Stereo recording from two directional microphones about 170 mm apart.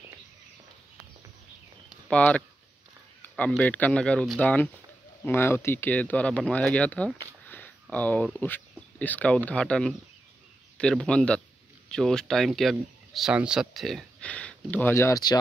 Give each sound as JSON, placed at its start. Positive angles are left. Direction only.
{"t": 2.0, "sound": "speech", "side_deg": 5}
{"t": 7.4, "sound": "a sound", "side_deg": 10}
{"t": 7.9, "sound": "a man's voice", "side_deg": 10}